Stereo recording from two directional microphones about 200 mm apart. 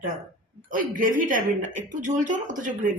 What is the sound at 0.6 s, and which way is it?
A woman's voice, 45° right (ahead or behind).